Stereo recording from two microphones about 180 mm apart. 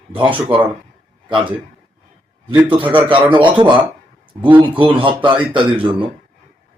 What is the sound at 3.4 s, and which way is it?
Speech, 25° right (ahead or behind).